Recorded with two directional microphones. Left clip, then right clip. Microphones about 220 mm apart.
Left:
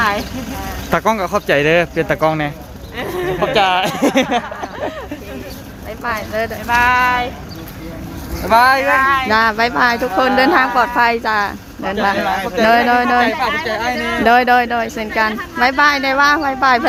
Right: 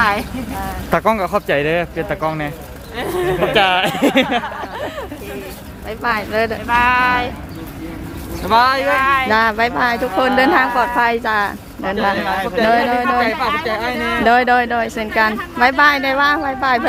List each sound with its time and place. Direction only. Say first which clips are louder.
0.0 s speech: right 1 dB; 15° right (ahead or behind)
0.9 s speech: even; 5° left (ahead or behind)
1.5 s speech: left 4 dB; 30° left (ahead or behind); by 2.5 s 50° left (ahead or behind)
3.0 s speech: right 1 dB; 25° right (ahead or behind)
3.4 s speech: left 1 dB; centre (ahead or behind)
6.0 s speech: right 2 dB; 40° right (ahead or behind)
6.7 s speech: left 2 dB; 20° left (ahead or behind)
8.4 s speech: left 2 dB; 35° left (ahead or behind)
9.0 s speech: even; 20° right (ahead or behind)
9.3 s speech: left 1 dB; 5° left (ahead or behind)
14.2 s speech: left 1 dB; 5° left (ahead or behind)